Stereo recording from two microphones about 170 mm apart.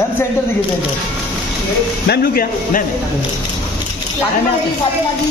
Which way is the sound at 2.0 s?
65° left (ahead or behind).